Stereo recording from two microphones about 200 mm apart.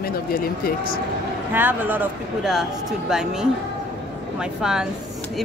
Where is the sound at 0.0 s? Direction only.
50° left (ahead or behind).